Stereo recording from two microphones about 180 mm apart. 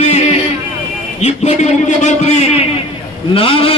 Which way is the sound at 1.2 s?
40° left (ahead or behind).